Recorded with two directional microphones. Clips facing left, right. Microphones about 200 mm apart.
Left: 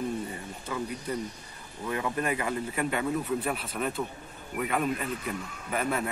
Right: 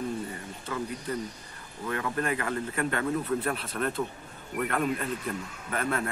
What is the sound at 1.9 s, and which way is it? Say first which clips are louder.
A man's voice: even; 15° left (ahead or behind).